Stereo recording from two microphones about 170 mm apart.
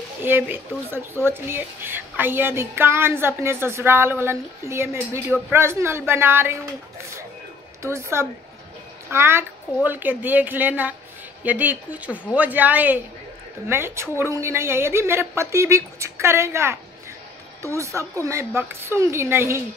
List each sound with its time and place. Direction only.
0.2 s speech: 10° right (ahead or behind)
7.8 s speech: 15° right (ahead or behind)